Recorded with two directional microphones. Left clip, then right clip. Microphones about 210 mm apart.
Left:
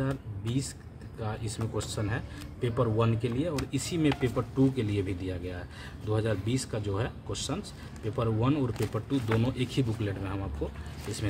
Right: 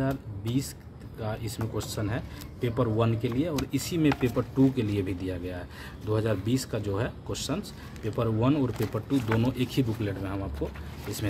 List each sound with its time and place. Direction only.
0.0 s speech: 5° right (ahead or behind)